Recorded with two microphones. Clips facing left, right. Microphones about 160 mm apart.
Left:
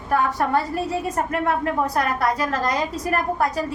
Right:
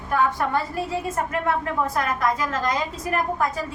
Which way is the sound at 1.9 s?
40° left (ahead or behind).